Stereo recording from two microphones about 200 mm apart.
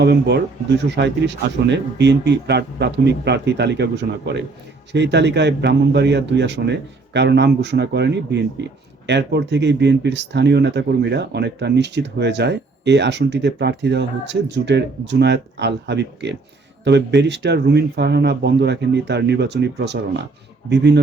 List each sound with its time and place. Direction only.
0.0 s speech: 55° right (ahead or behind)